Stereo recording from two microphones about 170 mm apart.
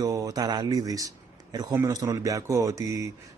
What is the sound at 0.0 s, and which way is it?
Speech, 20° right (ahead or behind).